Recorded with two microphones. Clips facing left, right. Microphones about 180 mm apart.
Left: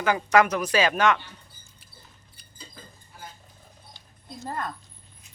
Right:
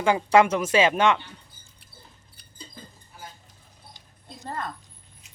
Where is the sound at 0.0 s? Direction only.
25° right (ahead or behind).